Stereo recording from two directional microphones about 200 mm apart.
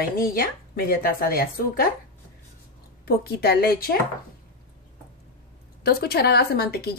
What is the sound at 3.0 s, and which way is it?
Speech, 50° left (ahead or behind).